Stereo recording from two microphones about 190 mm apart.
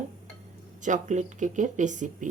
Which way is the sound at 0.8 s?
40° right (ahead or behind).